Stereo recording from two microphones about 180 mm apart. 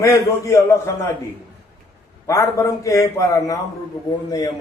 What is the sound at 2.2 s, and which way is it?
A man's voice, 15° left (ahead or behind).